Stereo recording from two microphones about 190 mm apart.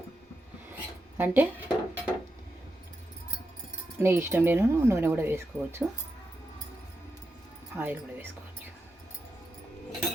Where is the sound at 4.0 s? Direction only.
10° right (ahead or behind).